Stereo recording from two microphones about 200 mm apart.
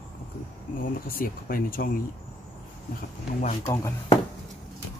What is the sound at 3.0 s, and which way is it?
Speech, 35° left (ahead or behind).